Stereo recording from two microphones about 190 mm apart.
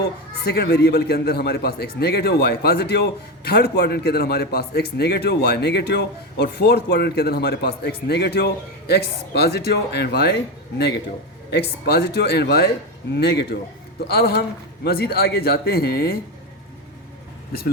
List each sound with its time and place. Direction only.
0.4 s a man's voice: 60° left (ahead or behind)
11.5 s a man's voice: 60° left (ahead or behind)